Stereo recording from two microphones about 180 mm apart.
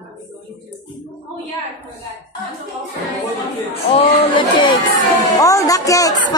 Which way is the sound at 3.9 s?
35° left (ahead or behind).